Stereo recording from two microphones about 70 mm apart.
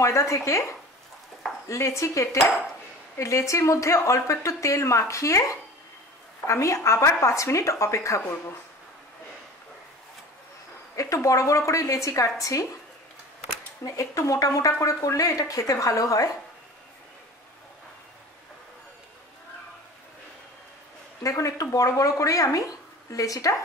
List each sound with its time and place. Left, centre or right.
0.0 s a woman's voice: left
11.0 s a woman's voice: left
13.8 s a woman's voice: left
21.2 s a woman's voice: left